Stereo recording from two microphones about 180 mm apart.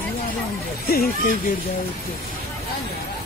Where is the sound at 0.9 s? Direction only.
55° left (ahead or behind).